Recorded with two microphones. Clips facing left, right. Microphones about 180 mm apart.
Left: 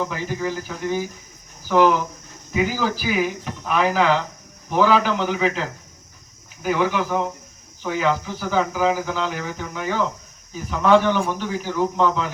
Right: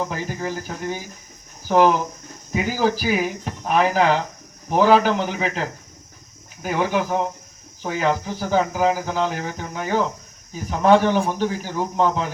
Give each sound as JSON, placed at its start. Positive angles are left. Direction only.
{"t": 0.1, "sound": "speech", "side_deg": -45}